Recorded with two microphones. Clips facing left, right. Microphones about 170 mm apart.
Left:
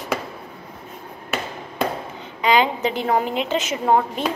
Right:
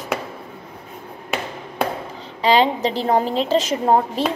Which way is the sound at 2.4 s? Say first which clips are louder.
Right 2 dB; 30° right (ahead or behind).